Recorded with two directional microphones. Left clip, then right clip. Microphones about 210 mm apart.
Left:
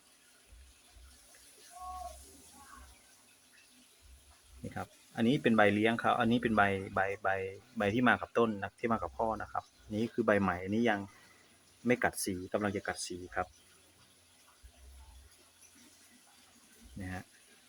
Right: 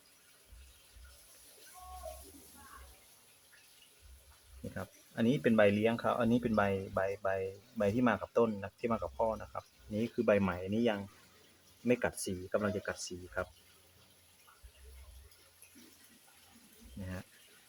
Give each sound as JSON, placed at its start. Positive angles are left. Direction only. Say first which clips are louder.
{"t": 4.7, "sound": "speech", "louder": "left 3 dB", "side_deg": 5}